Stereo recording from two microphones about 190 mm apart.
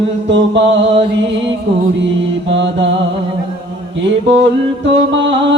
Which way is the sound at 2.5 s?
70° right (ahead or behind).